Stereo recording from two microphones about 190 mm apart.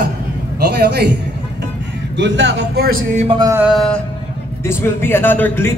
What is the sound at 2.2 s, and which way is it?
Speech, 70° right (ahead or behind).